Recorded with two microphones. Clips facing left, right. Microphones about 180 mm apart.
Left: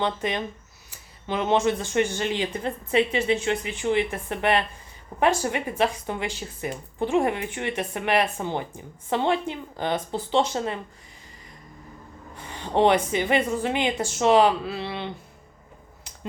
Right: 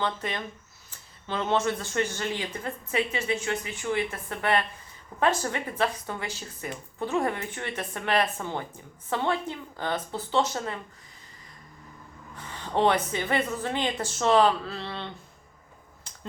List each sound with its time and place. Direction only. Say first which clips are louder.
0.0 s speech: left 4 dB; 20° left (ahead or behind)
12.5 s speech: left 4 dB; 20° left (ahead or behind)